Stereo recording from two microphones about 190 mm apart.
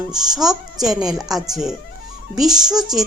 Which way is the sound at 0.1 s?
Centre (ahead or behind).